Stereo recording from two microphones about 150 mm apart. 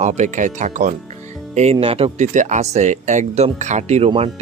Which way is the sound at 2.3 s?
50° right (ahead or behind).